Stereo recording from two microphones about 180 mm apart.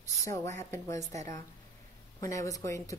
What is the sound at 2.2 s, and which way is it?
Speech, 20° left (ahead or behind).